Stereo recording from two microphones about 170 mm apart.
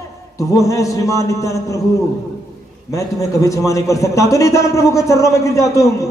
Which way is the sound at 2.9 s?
20° left (ahead or behind).